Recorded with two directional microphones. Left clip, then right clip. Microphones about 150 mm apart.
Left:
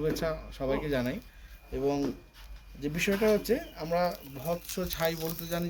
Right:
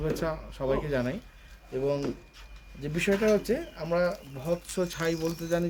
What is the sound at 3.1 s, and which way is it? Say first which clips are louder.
Speech: right 2 dB; 5° right (ahead or behind).